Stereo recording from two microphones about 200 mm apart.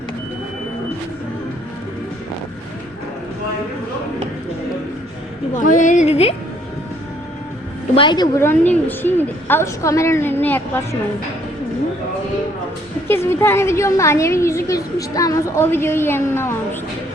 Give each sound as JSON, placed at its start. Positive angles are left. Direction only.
{"t": 5.5, "sound": "a woman's voice", "side_deg": 40}
{"t": 7.9, "sound": "a woman's voice", "side_deg": 20}
{"t": 13.1, "sound": "a woman's voice", "side_deg": 10}